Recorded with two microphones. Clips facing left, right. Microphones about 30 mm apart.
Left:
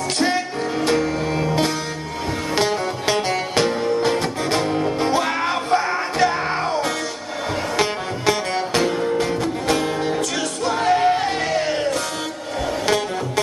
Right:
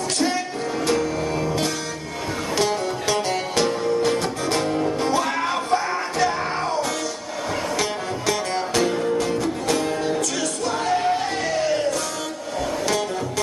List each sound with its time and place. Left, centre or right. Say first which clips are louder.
0.8 s music: left 2 dB; left